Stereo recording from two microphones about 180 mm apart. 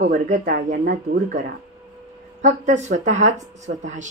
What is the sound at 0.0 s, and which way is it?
Speech, 50° right (ahead or behind).